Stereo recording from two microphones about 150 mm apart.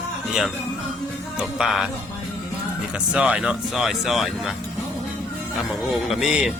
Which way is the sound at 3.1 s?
5° right (ahead or behind).